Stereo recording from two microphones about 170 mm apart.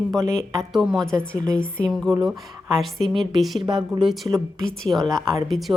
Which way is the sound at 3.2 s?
Centre (ahead or behind).